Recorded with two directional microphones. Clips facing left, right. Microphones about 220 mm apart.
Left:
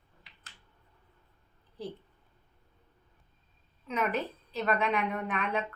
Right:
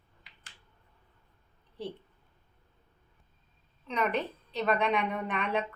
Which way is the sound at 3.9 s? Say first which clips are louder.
Right 1 dB; 5° left (ahead or behind).